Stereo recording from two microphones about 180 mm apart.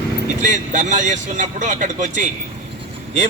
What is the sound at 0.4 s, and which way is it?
A man's voice, 45° right (ahead or behind).